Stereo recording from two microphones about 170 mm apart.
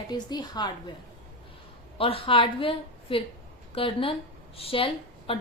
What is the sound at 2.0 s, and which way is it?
A woman's voice, 35° left (ahead or behind).